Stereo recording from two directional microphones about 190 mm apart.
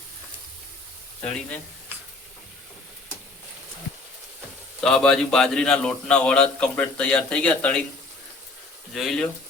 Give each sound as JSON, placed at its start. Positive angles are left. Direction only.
{"t": 4.8, "sound": "a man's voice", "side_deg": 0}
{"t": 8.9, "sound": "a man's voice", "side_deg": 0}